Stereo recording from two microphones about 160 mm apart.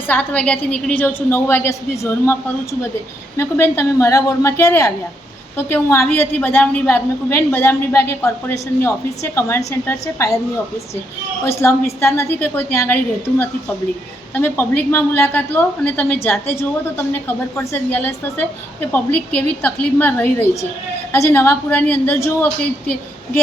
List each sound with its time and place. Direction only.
0.1 s a woman's voice: 10° left (ahead or behind)
11.4 s a woman's voice: 15° left (ahead or behind)
14.3 s a woman's voice: 10° left (ahead or behind)